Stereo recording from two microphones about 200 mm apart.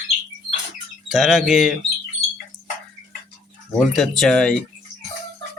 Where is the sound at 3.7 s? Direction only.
Centre (ahead or behind).